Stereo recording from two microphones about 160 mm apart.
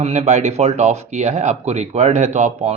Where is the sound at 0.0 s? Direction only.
45° right (ahead or behind).